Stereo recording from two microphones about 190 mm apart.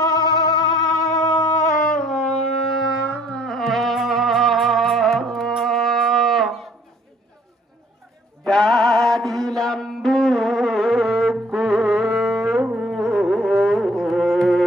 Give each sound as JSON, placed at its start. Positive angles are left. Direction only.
{"t": 0.0, "sound": "music", "side_deg": 20}
{"t": 0.9, "sound": "a sound", "side_deg": 20}
{"t": 1.4, "sound": "music", "side_deg": 15}
{"t": 2.0, "sound": "wind instrument", "side_deg": 0}
{"t": 2.3, "sound": "shofar", "side_deg": 35}
{"t": 3.1, "sound": "music", "side_deg": 5}
{"t": 8.5, "sound": "music", "side_deg": 5}